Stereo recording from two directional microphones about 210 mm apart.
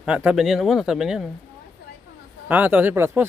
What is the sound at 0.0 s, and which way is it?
Speech, 5° right (ahead or behind).